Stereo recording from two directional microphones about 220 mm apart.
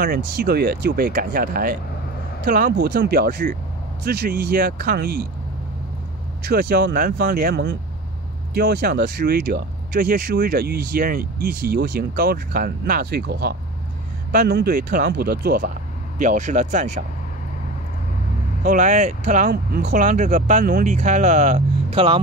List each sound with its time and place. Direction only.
0.4 s speech: 45° right (ahead or behind)
6.4 s speech: 45° right (ahead or behind)
18.6 s speech: 40° right (ahead or behind)